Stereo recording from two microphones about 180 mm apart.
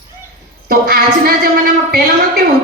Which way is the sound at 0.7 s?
55° right (ahead or behind).